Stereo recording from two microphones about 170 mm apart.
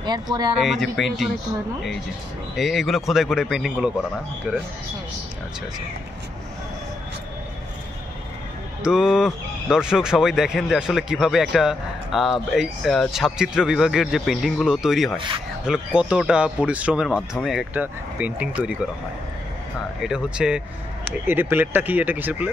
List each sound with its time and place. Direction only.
0.0 s speech: 25° right (ahead or behind)
0.6 s speech: centre (ahead or behind)
2.5 s speech: centre (ahead or behind)
8.8 s speech: 5° right (ahead or behind)
20.0 s speech: 5° right (ahead or behind)